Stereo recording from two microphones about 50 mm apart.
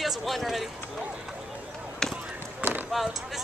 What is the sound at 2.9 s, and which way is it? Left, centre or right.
Speech, centre.